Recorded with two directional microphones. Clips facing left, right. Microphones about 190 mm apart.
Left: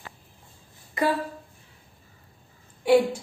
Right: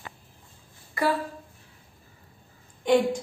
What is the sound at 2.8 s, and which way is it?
Speech, 10° left (ahead or behind).